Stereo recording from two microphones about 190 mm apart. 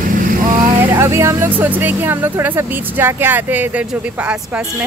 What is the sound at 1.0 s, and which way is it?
Speech, 15° right (ahead or behind).